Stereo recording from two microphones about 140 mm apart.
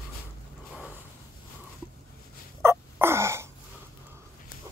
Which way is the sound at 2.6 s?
20° right (ahead or behind).